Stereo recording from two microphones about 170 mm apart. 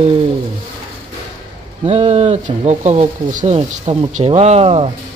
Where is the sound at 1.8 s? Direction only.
45° right (ahead or behind).